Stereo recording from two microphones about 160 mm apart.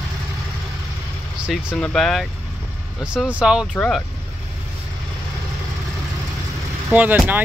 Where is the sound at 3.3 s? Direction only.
5° right (ahead or behind).